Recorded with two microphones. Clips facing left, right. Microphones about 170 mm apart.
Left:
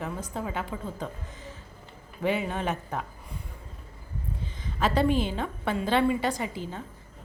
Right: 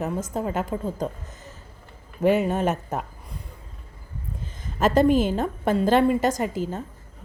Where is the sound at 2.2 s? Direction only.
45° right (ahead or behind).